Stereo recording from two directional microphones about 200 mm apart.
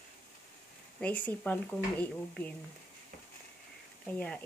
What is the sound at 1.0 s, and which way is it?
Speech, 5° left (ahead or behind).